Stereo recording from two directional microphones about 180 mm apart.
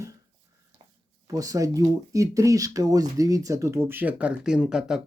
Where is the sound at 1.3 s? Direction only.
20° right (ahead or behind).